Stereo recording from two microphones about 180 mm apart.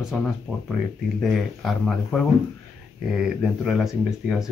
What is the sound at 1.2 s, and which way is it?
Speech, centre (ahead or behind).